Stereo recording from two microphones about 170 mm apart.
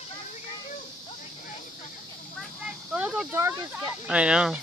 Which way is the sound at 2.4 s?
5° right (ahead or behind).